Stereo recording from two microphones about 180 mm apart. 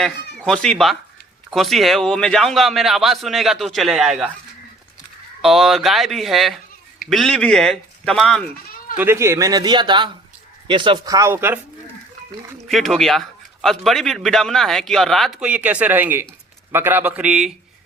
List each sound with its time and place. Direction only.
0.0 s a man's voice: 5° left (ahead or behind)
5.4 s a man's voice: centre (ahead or behind)
9.0 s speech: 15° right (ahead or behind)
12.6 s a man's voice: centre (ahead or behind)